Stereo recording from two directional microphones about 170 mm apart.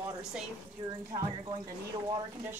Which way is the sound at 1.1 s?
25° right (ahead or behind).